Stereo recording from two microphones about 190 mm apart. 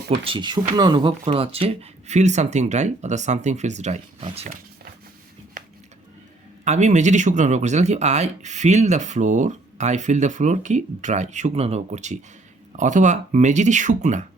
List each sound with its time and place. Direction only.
0.3 s speech: 25° right (ahead or behind)
6.7 s speech: 40° right (ahead or behind)